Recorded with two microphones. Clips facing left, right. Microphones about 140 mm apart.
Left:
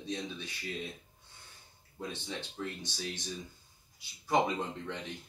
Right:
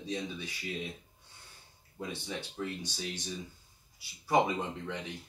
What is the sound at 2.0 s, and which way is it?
Speech, 10° right (ahead or behind).